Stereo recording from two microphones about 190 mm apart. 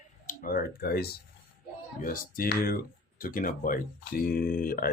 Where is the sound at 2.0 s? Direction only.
50° left (ahead or behind).